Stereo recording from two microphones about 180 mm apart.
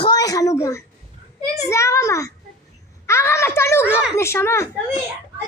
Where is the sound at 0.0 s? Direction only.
20° left (ahead or behind).